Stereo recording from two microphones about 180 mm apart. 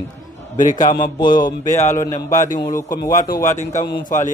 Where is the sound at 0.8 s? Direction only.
25° left (ahead or behind).